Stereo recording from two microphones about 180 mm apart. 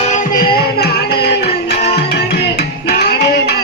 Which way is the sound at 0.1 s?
55° left (ahead or behind).